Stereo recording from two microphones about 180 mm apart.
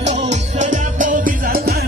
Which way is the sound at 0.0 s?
40° right (ahead or behind).